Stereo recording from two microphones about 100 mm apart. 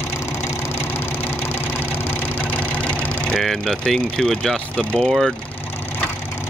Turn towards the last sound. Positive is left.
turn(degrees=0)  # may be behind; listen again after turning